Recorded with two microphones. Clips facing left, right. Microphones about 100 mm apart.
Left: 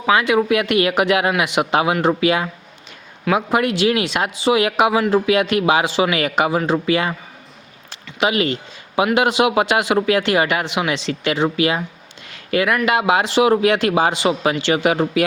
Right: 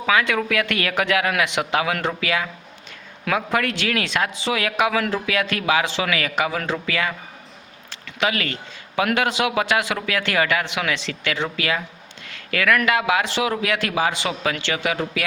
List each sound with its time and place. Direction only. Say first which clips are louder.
0.0 s a man's voice: left 4 dB; 20° left (ahead or behind)
8.2 s a man's voice: left 5 dB; 20° left (ahead or behind)